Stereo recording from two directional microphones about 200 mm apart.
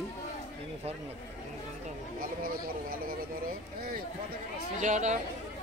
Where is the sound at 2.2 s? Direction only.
45° right (ahead or behind).